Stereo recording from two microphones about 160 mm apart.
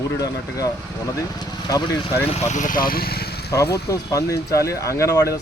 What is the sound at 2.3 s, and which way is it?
Speech, 50° left (ahead or behind).